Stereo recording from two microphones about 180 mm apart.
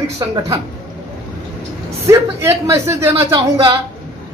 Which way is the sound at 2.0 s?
15° right (ahead or behind).